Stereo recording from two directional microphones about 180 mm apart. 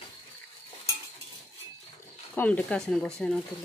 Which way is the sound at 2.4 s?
10° left (ahead or behind).